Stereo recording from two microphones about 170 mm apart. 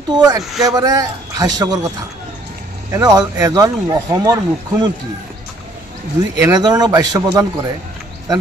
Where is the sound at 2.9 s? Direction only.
20° right (ahead or behind).